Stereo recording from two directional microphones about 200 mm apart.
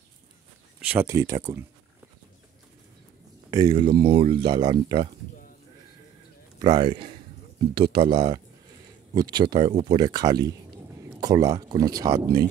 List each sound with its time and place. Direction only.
0.7 s speech: 10° right (ahead or behind)
3.4 s speech: 20° right (ahead or behind)
6.6 s speech: 20° right (ahead or behind)
11.1 s a sound: 20° right (ahead or behind)
11.7 s speech: 20° right (ahead or behind)